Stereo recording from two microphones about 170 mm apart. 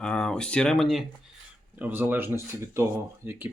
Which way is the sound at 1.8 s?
10° right (ahead or behind).